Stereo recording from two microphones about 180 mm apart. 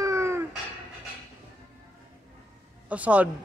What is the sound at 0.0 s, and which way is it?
Cat, 15° right (ahead or behind).